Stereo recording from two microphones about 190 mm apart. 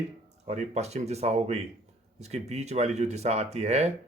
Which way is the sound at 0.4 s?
35° right (ahead or behind).